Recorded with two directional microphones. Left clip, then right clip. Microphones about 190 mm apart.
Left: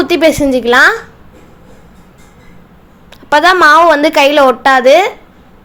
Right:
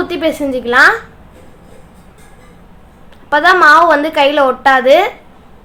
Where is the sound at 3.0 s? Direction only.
40° left (ahead or behind).